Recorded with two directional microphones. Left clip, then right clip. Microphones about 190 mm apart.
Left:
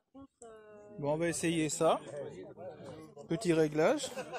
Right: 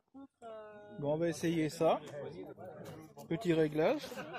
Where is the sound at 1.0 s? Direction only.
10° left (ahead or behind).